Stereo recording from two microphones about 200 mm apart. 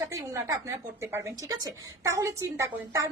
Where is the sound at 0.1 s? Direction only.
15° right (ahead or behind).